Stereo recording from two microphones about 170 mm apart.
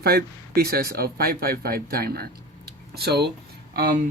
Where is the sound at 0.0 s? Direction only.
70° right (ahead or behind).